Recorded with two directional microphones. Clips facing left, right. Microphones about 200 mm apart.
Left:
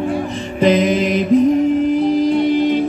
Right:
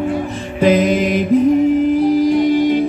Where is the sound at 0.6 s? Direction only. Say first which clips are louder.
Right 1 dB; 5° right (ahead or behind).